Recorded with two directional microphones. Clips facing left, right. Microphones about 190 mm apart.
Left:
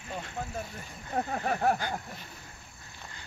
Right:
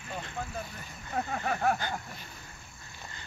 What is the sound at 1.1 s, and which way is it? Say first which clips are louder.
Speech: left 2 dB; 35° left (ahead or behind).